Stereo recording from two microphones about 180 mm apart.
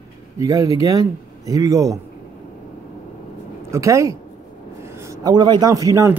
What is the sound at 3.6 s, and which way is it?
A man's voice, 15° right (ahead or behind).